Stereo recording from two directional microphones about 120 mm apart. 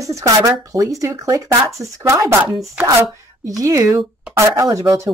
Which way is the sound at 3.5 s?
30° right (ahead or behind).